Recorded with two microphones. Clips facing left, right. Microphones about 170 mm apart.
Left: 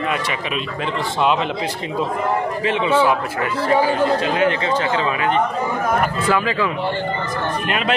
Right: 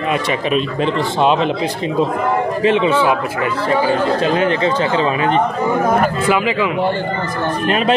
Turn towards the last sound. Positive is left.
turn(degrees=-15)  # may be behind; listen again after turning